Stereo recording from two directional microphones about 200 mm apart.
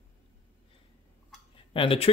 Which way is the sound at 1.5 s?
25° left (ahead or behind).